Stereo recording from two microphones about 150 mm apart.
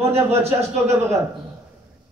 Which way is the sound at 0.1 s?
45° right (ahead or behind).